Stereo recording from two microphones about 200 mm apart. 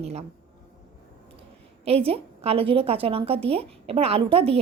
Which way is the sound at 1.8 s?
30° right (ahead or behind).